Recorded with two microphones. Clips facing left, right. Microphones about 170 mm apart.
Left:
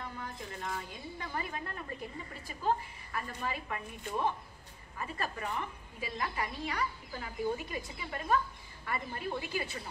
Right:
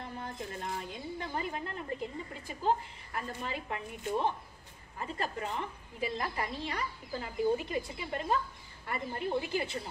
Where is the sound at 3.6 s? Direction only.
25° right (ahead or behind).